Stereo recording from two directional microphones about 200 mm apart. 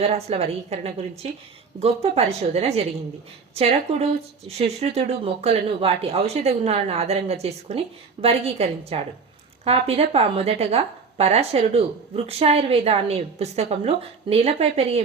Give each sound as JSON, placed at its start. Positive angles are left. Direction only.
{"t": 0.0, "sound": "a woman's voice", "side_deg": -30}